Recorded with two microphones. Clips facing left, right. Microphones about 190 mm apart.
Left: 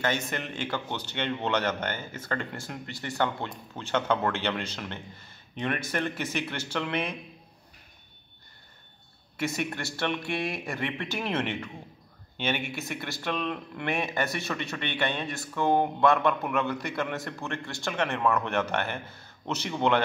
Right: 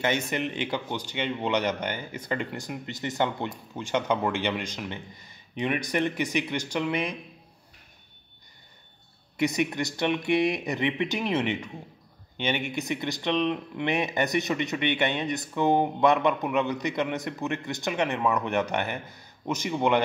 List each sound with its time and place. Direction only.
0.5 s speech: 15° right (ahead or behind)
9.4 s speech: 15° right (ahead or behind)
12.7 s speech: 15° right (ahead or behind)
13.3 s speech: centre (ahead or behind)
13.7 s speech: 20° right (ahead or behind)